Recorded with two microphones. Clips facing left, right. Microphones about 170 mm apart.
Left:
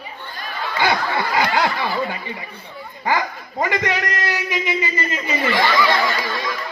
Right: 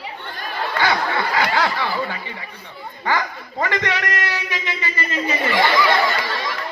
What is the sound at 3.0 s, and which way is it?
Speech, 10° left (ahead or behind).